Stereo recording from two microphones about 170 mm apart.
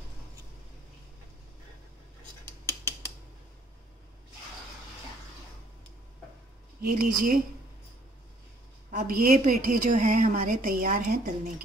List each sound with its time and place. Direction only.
6.8 s speech: 55° right (ahead or behind)
8.9 s a woman's voice: 55° right (ahead or behind)